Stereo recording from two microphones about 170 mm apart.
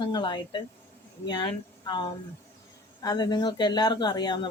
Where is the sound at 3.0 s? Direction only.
25° left (ahead or behind).